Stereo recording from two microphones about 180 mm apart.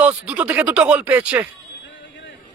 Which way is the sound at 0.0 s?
5° right (ahead or behind).